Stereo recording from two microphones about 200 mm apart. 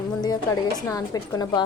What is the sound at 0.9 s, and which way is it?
Speech, 20° left (ahead or behind).